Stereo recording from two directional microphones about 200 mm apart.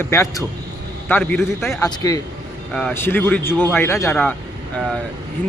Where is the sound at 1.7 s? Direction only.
15° left (ahead or behind).